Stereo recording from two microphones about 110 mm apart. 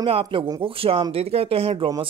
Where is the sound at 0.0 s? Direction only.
55° right (ahead or behind).